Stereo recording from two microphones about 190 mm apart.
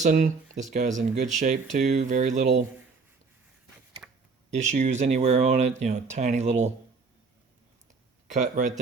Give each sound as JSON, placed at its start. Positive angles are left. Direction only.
{"t": 0.0, "sound": "speech", "side_deg": -40}
{"t": 4.5, "sound": "speech", "side_deg": -40}
{"t": 7.9, "sound": "a sound", "side_deg": -40}